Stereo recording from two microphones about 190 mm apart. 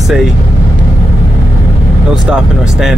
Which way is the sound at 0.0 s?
Centre (ahead or behind).